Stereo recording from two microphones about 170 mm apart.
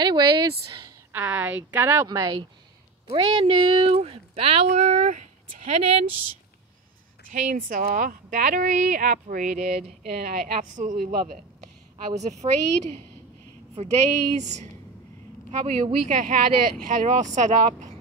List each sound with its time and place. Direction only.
0.0 s speech: 25° right (ahead or behind)
1.1 s speech: 10° right (ahead or behind)
2.0 s speech: 25° right (ahead or behind); by 6.0 s 45° right (ahead or behind)
7.4 s speech: 55° right (ahead or behind)
10.6 s speech: 50° right (ahead or behind)
12.2 s speech: 40° right (ahead or behind)